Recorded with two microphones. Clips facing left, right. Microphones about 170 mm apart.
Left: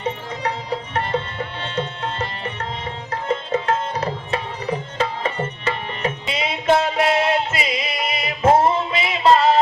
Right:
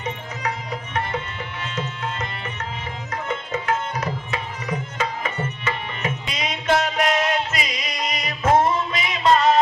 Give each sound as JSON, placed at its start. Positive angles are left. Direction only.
{"t": 0.0, "sound": "music", "side_deg": 30}
{"t": 3.1, "sound": "tabla", "side_deg": 30}